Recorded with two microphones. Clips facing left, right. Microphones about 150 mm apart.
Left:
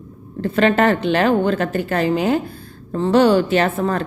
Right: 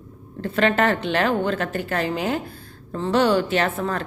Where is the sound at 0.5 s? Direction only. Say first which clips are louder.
Left 4 dB; 15° left (ahead or behind).